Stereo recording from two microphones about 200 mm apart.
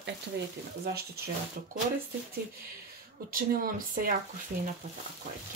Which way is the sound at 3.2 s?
45° right (ahead or behind).